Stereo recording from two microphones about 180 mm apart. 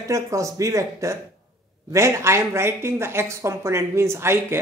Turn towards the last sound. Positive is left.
turn(degrees=-15)  # may be behind; listen again after turning